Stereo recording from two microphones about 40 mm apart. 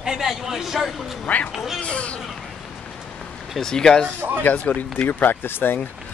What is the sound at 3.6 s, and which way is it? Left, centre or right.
Speech, centre.